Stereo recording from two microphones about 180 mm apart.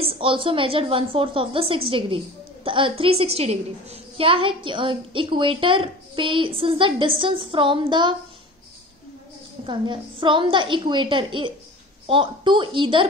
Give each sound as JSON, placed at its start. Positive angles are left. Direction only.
{"t": 0.0, "sound": "a woman's voice", "side_deg": -30}
{"t": 9.7, "sound": "a woman's voice", "side_deg": -25}